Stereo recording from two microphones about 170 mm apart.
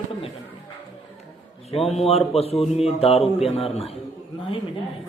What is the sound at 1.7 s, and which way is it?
Speech, 35° left (ahead or behind).